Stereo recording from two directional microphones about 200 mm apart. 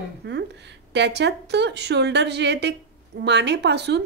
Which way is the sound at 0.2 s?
60° right (ahead or behind).